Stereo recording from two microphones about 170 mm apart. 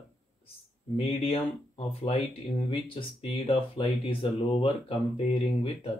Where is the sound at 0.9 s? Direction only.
35° left (ahead or behind).